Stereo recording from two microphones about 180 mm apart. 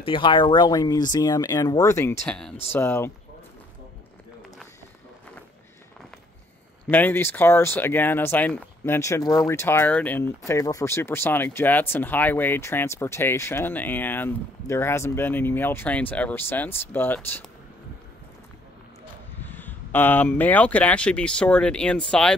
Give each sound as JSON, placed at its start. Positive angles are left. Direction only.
{"t": 0.0, "sound": "speech", "side_deg": 25}
{"t": 2.2, "sound": "speech", "side_deg": 5}
{"t": 6.9, "sound": "speech", "side_deg": 10}
{"t": 19.4, "sound": "speech", "side_deg": 10}